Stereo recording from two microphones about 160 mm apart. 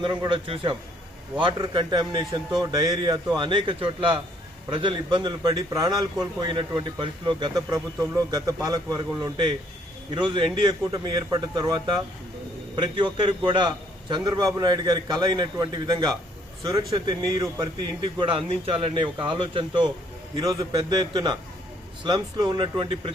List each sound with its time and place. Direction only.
0.0 s a man's voice: 30° right (ahead or behind)